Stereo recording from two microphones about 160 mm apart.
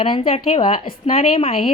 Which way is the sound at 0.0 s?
35° left (ahead or behind).